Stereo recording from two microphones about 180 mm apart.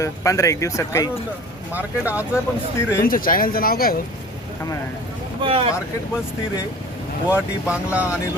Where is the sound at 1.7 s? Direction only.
10° right (ahead or behind).